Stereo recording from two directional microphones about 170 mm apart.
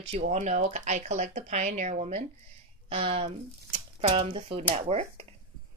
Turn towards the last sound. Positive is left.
turn(degrees=-35)  # may be behind; listen again after turning